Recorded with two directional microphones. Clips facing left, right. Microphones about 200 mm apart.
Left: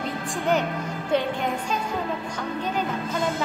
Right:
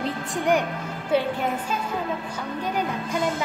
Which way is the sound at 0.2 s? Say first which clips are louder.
Right 1 dB; 20° right (ahead or behind).